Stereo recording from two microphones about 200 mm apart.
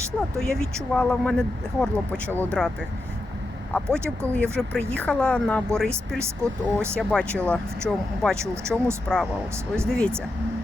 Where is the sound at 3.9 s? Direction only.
10° right (ahead or behind).